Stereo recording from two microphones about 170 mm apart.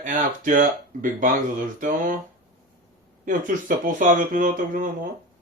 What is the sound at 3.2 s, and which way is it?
Speech, 50° right (ahead or behind).